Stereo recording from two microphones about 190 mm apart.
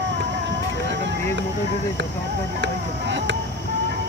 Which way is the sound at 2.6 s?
70° right (ahead or behind).